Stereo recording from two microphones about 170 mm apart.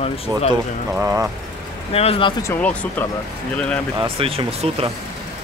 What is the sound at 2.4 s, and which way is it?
Speech, 10° left (ahead or behind).